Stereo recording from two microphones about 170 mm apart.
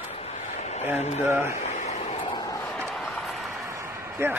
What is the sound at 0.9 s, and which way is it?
Speech, 40° left (ahead or behind).